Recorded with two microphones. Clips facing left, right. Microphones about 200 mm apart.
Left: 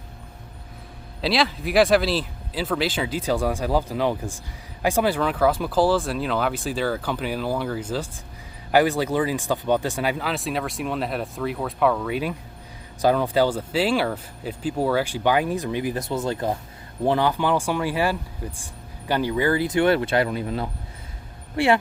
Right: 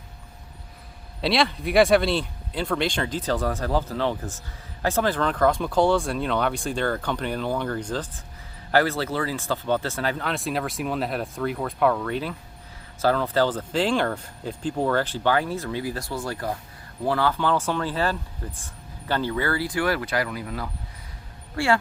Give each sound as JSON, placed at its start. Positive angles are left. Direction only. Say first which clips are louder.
{"t": 1.2, "sound": "speech", "louder": "even", "side_deg": 0}